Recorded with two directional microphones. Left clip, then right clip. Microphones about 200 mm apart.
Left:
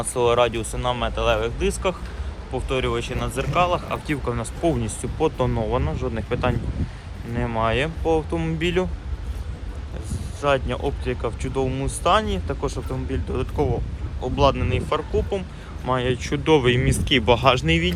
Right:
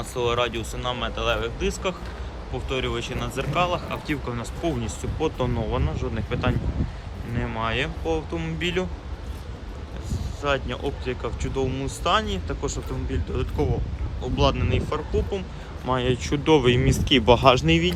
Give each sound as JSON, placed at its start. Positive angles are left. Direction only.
{"t": 0.0, "sound": "speech", "side_deg": 0}
{"t": 10.1, "sound": "speech", "side_deg": -5}